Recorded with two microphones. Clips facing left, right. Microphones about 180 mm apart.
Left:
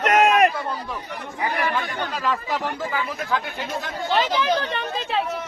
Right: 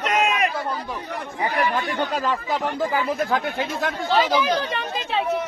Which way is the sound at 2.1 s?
35° right (ahead or behind).